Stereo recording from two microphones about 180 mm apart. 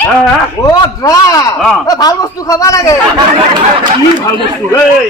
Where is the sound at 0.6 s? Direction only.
20° left (ahead or behind).